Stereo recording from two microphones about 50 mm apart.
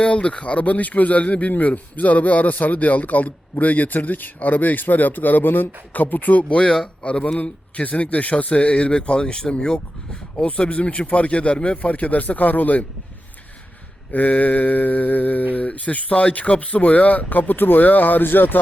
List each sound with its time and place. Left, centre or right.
0.0 s speech: left
6.5 s speech: left
10.3 s speech: left
14.1 s speech: left